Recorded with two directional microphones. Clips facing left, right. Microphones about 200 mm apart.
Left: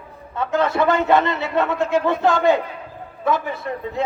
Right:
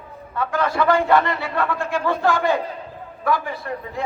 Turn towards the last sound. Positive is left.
turn(degrees=20)  # may be behind; listen again after turning